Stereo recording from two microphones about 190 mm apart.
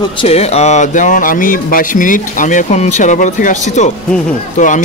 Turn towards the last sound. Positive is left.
turn(degrees=40)  # may be behind; listen again after turning